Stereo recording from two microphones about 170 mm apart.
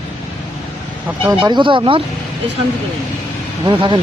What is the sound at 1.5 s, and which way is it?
Speech, 30° right (ahead or behind).